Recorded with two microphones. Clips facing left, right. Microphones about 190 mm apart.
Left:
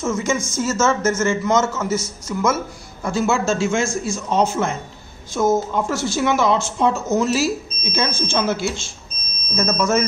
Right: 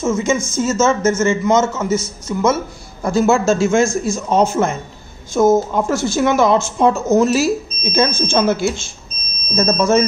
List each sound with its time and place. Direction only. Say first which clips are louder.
0.0 s a man's voice: right 4 dB; 20° right (ahead or behind)
3.0 s speech: right 5 dB; 40° right (ahead or behind)
9.6 s speech: right 5 dB; 35° right (ahead or behind)